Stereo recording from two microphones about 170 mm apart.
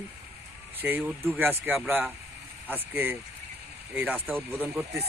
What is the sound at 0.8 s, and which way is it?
Speech, 10° right (ahead or behind).